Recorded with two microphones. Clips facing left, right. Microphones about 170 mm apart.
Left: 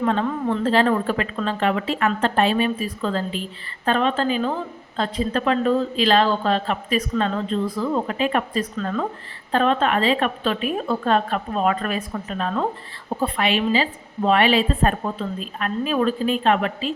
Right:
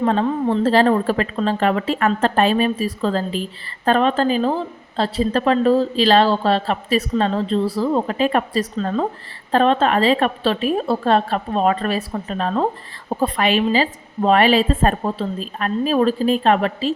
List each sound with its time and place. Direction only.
0.0 s a woman's voice: 35° right (ahead or behind)